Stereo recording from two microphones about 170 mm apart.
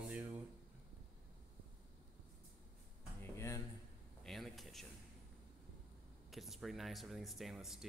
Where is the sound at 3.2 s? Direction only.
15° left (ahead or behind).